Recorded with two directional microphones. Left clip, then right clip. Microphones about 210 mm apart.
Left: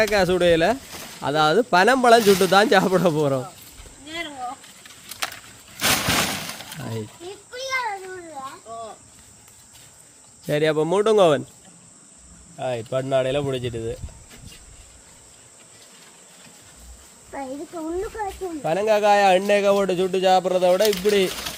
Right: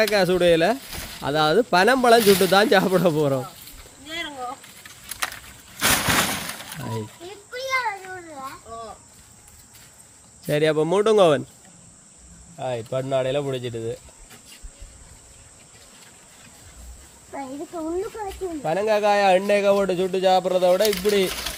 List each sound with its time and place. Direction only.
0.0 s speech: centre (ahead or behind)
4.1 s a sound: 10° right (ahead or behind)
5.2 s breaking: centre (ahead or behind)
7.5 s a sound: 20° right (ahead or behind)
10.4 s speech: centre (ahead or behind)
12.5 s speech: 10° left (ahead or behind)
17.3 s speech: 5° left (ahead or behind)